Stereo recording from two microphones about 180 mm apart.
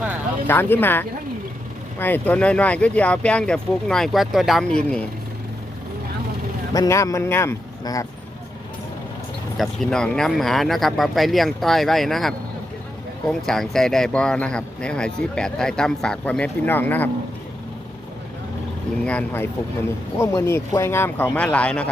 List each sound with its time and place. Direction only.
0.4 s speech: 10° left (ahead or behind)
6.7 s speech: 15° left (ahead or behind)
9.6 s speech: 5° left (ahead or behind)
19.0 s speech: 10° left (ahead or behind)